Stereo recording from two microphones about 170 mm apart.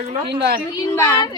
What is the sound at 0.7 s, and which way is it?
Speech, 20° left (ahead or behind).